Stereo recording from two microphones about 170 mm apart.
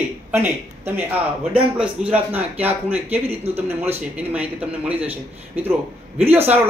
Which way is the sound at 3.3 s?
35° right (ahead or behind).